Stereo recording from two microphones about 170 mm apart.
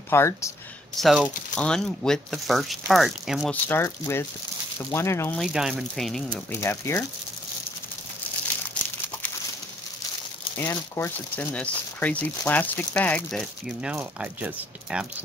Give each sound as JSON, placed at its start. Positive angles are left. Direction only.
{"t": 0.1, "sound": "speech", "side_deg": 15}
{"t": 0.9, "sound": "speech", "side_deg": -5}
{"t": 3.6, "sound": "speech", "side_deg": 15}
{"t": 5.4, "sound": "speech", "side_deg": -5}
{"t": 6.6, "sound": "speech", "side_deg": 15}
{"t": 10.6, "sound": "speech", "side_deg": 10}